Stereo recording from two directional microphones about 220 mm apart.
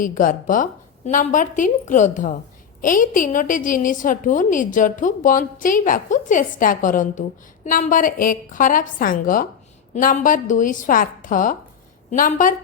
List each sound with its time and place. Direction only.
0.0 s a woman's voice: 40° left (ahead or behind)